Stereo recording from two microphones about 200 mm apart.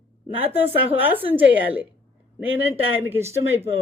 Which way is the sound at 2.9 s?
10° right (ahead or behind).